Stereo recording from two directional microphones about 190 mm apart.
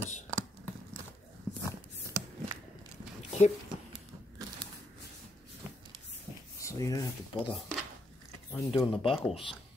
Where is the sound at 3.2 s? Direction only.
35° left (ahead or behind).